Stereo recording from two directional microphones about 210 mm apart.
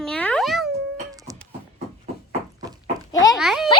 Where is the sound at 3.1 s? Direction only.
15° left (ahead or behind).